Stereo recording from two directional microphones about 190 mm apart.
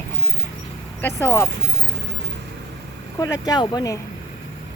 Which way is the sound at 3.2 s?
20° left (ahead or behind).